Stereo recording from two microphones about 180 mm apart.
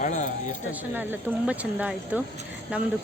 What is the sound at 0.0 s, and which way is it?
Speech, 45° left (ahead or behind).